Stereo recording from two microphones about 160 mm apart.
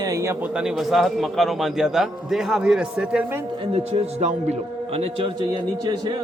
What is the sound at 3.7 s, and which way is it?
A man's voice, 45° right (ahead or behind).